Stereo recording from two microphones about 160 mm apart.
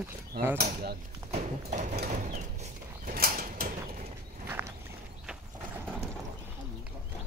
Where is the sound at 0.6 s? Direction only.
75° right (ahead or behind).